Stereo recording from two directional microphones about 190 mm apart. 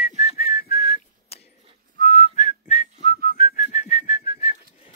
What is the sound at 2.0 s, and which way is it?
Whistling, 40° left (ahead or behind).